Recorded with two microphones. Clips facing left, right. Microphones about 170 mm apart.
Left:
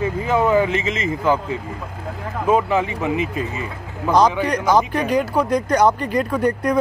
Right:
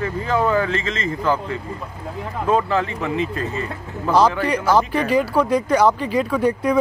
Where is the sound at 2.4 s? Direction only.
10° left (ahead or behind).